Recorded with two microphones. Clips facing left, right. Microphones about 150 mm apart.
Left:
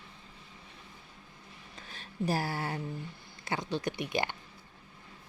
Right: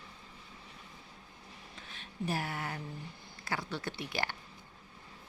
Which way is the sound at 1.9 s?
40° left (ahead or behind).